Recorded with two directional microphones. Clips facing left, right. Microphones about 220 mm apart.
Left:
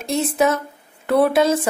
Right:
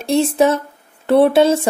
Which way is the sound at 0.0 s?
30° right (ahead or behind).